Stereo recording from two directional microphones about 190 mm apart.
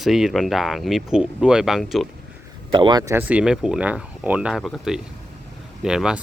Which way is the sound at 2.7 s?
25° right (ahead or behind).